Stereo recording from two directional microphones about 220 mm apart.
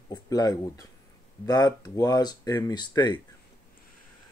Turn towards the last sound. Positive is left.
turn(degrees=20)  # may be behind; listen again after turning